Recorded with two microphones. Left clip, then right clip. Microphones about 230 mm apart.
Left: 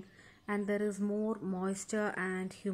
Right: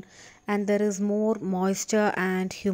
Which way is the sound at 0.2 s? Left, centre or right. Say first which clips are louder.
Right 9 dB; right.